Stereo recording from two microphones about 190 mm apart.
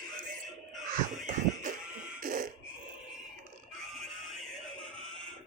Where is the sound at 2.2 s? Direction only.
50° right (ahead or behind).